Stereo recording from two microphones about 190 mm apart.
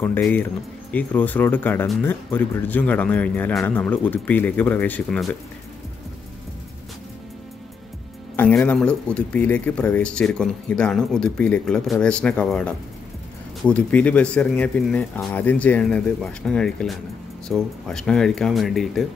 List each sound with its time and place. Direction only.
0.0 s speech: 10° left (ahead or behind)
8.4 s a man's voice: 10° left (ahead or behind)